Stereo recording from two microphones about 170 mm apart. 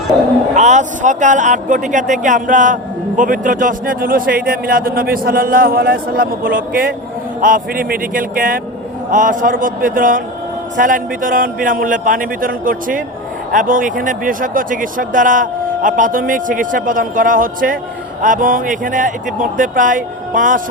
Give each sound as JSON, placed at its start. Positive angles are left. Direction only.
{"t": 0.5, "sound": "a man's voice", "side_deg": -45}